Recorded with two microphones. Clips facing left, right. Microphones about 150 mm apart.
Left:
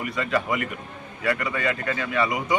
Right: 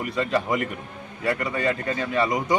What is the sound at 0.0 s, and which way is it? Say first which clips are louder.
A man's voice: right 1 dB; 35° right (ahead or behind).